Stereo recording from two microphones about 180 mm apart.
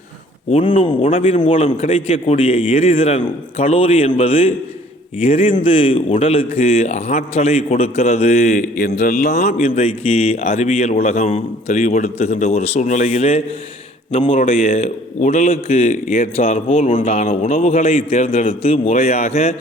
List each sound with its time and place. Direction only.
0.8 s a man's voice: 30° left (ahead or behind)